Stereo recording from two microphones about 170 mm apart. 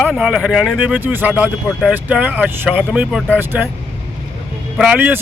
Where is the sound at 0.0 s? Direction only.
Centre (ahead or behind).